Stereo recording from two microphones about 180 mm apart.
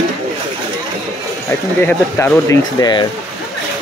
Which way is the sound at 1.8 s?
10° left (ahead or behind).